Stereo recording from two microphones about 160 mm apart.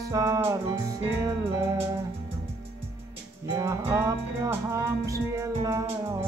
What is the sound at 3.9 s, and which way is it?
Music, 15° right (ahead or behind).